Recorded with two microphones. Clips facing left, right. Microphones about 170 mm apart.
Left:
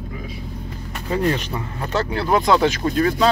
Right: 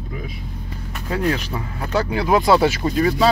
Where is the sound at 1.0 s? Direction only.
Centre (ahead or behind).